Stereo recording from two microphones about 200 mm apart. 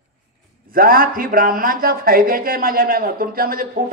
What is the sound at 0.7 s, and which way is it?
Speech, 45° right (ahead or behind).